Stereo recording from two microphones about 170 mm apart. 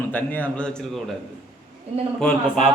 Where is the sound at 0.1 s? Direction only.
10° left (ahead or behind).